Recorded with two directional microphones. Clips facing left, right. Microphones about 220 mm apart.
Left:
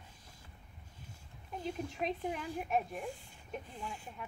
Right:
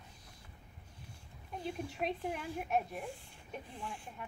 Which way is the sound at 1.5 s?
Centre (ahead or behind).